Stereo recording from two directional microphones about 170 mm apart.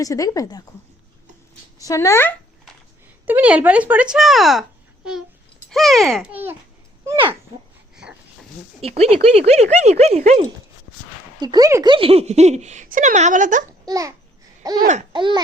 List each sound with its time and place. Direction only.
0.0 s a woman's voice: 20° left (ahead or behind)
1.8 s speech: 20° left (ahead or behind)
3.2 s speech: 10° right (ahead or behind)
5.7 s a child's voice: centre (ahead or behind)
6.3 s speech: 10° right (ahead or behind)
7.9 s a sound: 5° right (ahead or behind)
8.8 s speech: 40° right (ahead or behind)
11.3 s speech: 25° right (ahead or behind); by 13.7 s 50° right (ahead or behind)
13.7 s a child's voice: 20° right (ahead or behind)
14.6 s babbling: 20° right (ahead or behind)
15.1 s speech: 25° right (ahead or behind)